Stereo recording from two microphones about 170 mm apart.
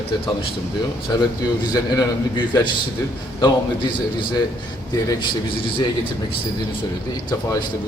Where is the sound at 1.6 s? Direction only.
20° left (ahead or behind).